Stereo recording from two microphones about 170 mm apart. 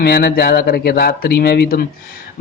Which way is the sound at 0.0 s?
70° left (ahead or behind).